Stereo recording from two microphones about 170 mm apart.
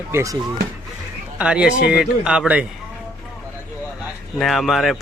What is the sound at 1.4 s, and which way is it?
Speech, 5° right (ahead or behind).